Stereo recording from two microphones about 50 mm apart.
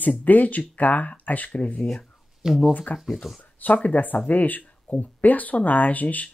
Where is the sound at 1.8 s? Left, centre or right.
Centre.